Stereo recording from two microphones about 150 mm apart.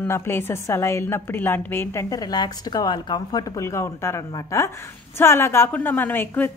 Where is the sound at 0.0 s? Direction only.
15° left (ahead or behind).